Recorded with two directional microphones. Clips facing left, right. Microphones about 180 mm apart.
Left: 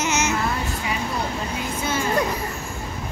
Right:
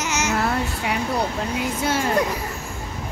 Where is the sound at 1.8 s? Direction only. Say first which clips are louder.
Right 2 dB; 75° right (ahead or behind).